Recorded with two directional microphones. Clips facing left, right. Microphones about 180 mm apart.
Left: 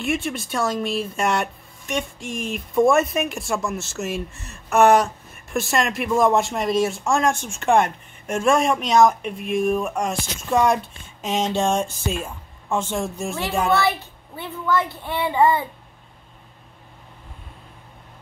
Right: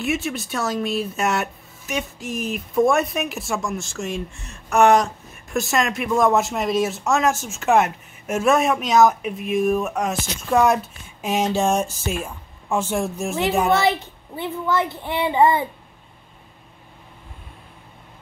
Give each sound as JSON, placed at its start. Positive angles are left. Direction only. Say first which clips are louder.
{"t": 0.0, "sound": "speech", "louder": "even", "side_deg": 0}
{"t": 13.7, "sound": "a child's voice", "louder": "right 2 dB", "side_deg": -20}